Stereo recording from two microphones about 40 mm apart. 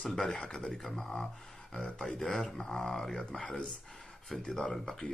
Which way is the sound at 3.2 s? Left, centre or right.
Left.